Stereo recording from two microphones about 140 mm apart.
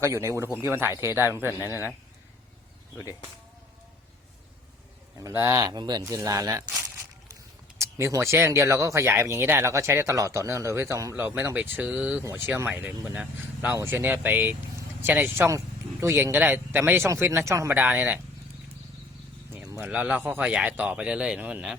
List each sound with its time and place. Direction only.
0.0 s speech: 20° right (ahead or behind)
5.2 s speech: 15° right (ahead or behind)
7.8 s speech: 20° right (ahead or behind)
19.8 s speech: 10° right (ahead or behind)